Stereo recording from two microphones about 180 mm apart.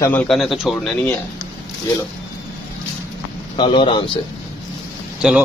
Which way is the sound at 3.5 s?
30° left (ahead or behind).